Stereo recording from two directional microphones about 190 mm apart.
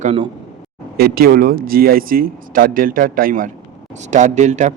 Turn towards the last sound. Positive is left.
turn(degrees=-40)  # may be behind; listen again after turning